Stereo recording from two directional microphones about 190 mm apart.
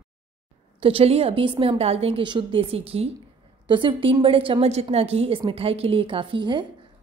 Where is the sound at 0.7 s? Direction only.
30° right (ahead or behind).